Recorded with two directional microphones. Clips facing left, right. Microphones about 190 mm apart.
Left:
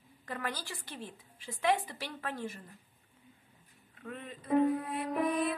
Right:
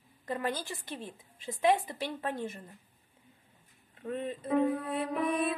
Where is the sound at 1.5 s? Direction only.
20° right (ahead or behind).